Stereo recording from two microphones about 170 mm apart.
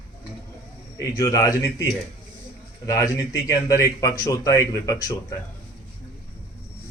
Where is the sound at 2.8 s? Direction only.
20° left (ahead or behind).